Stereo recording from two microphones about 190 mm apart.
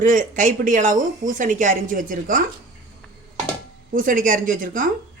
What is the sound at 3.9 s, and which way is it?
Speech, 45° right (ahead or behind).